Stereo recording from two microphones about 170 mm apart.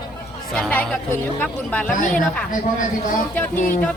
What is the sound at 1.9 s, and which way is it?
A man's voice, 50° left (ahead or behind).